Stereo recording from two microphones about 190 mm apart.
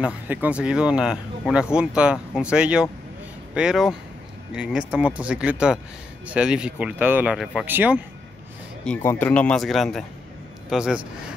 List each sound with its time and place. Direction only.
0.0 s speech: 10° right (ahead or behind)
8.8 s speech: 10° left (ahead or behind)